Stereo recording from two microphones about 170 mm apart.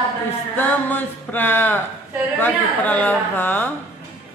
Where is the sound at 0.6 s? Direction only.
10° left (ahead or behind).